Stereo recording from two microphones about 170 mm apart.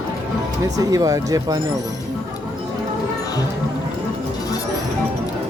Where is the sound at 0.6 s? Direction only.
20° right (ahead or behind).